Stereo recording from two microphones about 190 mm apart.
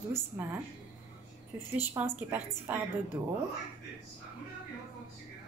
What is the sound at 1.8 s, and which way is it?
A woman's voice, 10° right (ahead or behind).